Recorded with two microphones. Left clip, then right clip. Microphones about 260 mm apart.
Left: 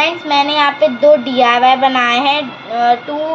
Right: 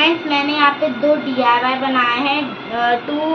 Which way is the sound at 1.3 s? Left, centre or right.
Left.